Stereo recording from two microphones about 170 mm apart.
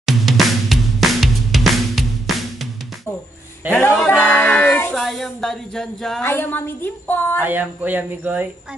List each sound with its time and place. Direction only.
0.0 s music: centre (ahead or behind)
3.7 s music: 15° left (ahead or behind)
4.2 s female singing: 10° left (ahead or behind)
6.2 s a woman's voice: 15° left (ahead or behind)
7.4 s speech: 10° right (ahead or behind)